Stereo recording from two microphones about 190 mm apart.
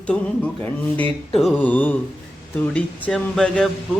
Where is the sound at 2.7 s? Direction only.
5° left (ahead or behind).